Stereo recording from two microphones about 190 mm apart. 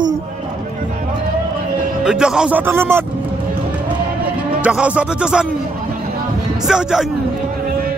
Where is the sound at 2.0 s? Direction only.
5° right (ahead or behind).